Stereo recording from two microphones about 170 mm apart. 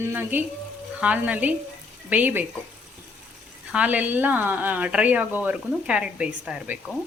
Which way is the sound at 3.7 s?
5° right (ahead or behind).